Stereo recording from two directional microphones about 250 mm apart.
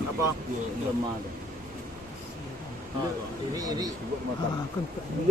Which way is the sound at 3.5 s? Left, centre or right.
Centre.